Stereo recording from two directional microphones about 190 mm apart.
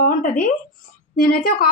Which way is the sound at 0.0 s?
45° left (ahead or behind).